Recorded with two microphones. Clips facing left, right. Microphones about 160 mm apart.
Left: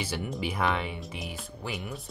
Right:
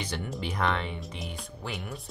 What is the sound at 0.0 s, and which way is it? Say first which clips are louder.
Speech: left 2 dB; 5° left (ahead or behind).